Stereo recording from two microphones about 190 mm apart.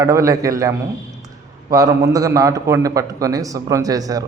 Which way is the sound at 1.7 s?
15° right (ahead or behind).